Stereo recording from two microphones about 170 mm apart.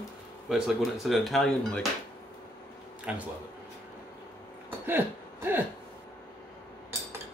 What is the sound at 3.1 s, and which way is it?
Speech, 5° right (ahead or behind).